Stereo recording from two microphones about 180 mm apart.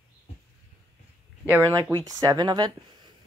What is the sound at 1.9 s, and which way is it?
Speech, 20° right (ahead or behind).